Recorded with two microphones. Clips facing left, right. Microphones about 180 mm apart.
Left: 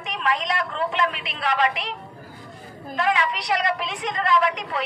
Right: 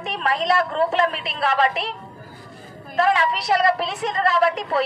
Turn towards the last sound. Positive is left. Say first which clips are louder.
# right 2 dB
turn(degrees=-40)  # may be behind; listen again after turning